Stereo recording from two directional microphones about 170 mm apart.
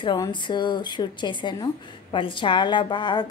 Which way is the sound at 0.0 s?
25° left (ahead or behind).